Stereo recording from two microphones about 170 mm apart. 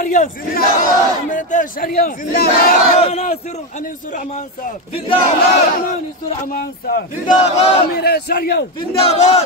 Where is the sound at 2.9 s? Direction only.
35° left (ahead or behind).